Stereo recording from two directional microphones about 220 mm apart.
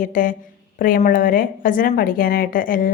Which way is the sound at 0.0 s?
40° left (ahead or behind).